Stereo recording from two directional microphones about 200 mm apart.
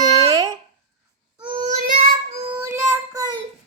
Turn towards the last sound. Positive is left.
turn(degrees=-20)  # may be behind; listen again after turning